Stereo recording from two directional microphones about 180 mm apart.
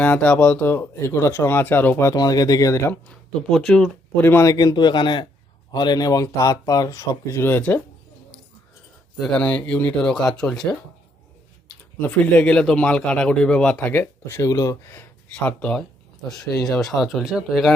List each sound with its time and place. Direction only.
0.0 s speech: 10° left (ahead or behind)
3.5 s speech: centre (ahead or behind)
9.2 s speech: 5° left (ahead or behind)
12.0 s speech: 10° left (ahead or behind)